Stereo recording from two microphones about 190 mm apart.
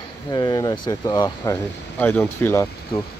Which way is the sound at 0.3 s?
20° left (ahead or behind).